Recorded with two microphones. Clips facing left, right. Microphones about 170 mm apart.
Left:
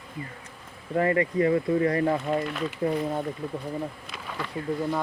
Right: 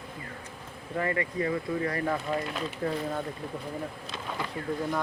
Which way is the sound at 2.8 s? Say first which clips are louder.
Left 5 dB; 15° left (ahead or behind).